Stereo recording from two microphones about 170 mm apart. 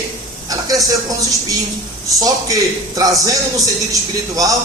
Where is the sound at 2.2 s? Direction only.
20° right (ahead or behind).